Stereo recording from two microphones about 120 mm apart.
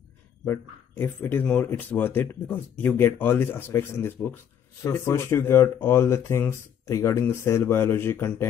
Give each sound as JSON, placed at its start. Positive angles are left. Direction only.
{"t": 0.5, "sound": "speech", "side_deg": 20}